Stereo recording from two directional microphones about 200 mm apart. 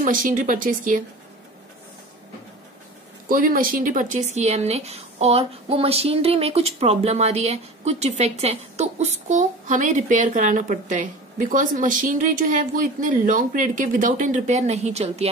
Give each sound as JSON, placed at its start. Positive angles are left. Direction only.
{"t": 0.0, "sound": "speech", "side_deg": -40}
{"t": 3.3, "sound": "speech", "side_deg": -45}